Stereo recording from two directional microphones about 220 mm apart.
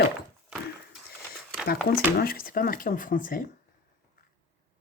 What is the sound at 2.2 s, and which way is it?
Speech, 40° left (ahead or behind).